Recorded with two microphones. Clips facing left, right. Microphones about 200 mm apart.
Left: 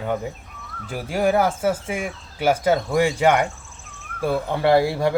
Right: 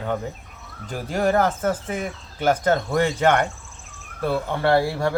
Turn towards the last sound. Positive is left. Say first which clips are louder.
# left 2 dB
turn(degrees=15)  # may be behind; listen again after turning